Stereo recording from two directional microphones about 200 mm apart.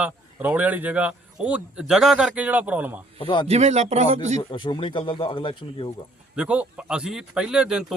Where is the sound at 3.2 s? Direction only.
25° left (ahead or behind).